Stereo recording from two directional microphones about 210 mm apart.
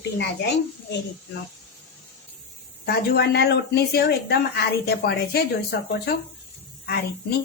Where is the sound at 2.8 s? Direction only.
50° left (ahead or behind).